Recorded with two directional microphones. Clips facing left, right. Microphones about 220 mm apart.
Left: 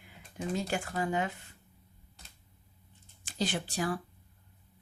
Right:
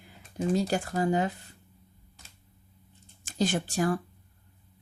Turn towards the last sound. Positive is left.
turn(degrees=-45)  # may be behind; listen again after turning